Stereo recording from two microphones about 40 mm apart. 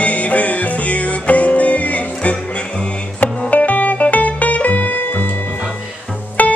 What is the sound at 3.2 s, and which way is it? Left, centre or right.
Music, left.